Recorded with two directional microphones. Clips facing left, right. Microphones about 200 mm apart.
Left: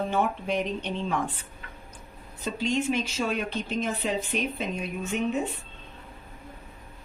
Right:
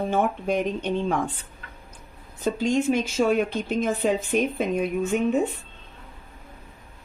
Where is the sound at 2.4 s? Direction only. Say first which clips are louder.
Right 5 dB; 45° right (ahead or behind).